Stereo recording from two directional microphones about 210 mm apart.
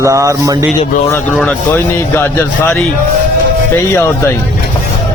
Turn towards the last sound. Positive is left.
turn(degrees=10)  # may be behind; listen again after turning